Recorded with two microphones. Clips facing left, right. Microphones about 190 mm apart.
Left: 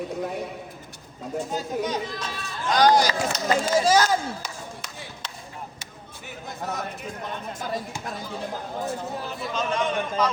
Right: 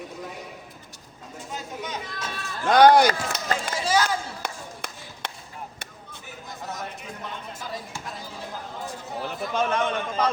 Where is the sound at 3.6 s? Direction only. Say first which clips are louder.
Left 5 dB; 45° left (ahead or behind).